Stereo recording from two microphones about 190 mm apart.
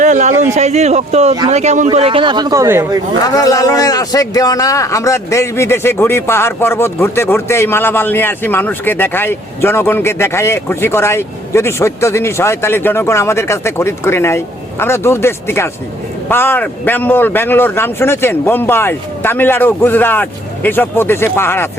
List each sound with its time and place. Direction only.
0.0 s a man's voice: 40° right (ahead or behind); by 3.0 s 15° right (ahead or behind)
3.3 s a man's voice: 20° left (ahead or behind)